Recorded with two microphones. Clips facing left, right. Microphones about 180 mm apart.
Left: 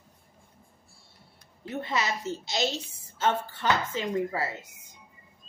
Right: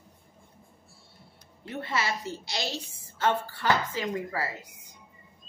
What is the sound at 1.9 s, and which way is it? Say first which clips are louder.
A woman's voice: even; 20° left (ahead or behind).